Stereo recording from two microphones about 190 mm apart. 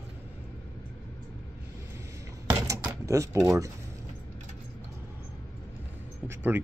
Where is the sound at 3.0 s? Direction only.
15° right (ahead or behind).